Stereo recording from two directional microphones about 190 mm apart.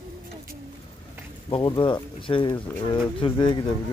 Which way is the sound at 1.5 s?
25° left (ahead or behind).